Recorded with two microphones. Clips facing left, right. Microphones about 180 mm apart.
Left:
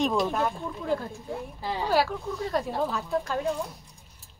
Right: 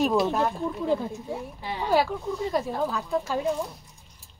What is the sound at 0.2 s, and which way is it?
Speech, 15° right (ahead or behind).